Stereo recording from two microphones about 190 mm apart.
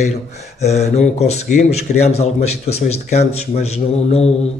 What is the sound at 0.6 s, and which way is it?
A man's voice, 35° left (ahead or behind).